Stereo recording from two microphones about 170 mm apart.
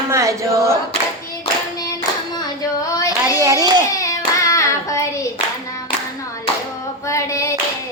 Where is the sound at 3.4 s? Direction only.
20° right (ahead or behind).